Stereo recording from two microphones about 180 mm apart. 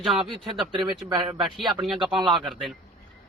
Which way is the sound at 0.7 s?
25° right (ahead or behind).